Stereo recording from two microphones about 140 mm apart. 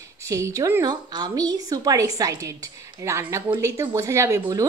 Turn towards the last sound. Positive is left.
turn(degrees=-20)  # may be behind; listen again after turning